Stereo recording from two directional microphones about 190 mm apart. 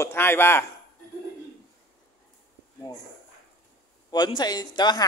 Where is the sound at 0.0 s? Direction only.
15° left (ahead or behind).